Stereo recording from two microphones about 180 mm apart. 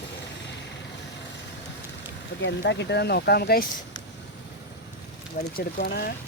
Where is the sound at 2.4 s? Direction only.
75° left (ahead or behind); by 3.7 s 60° left (ahead or behind).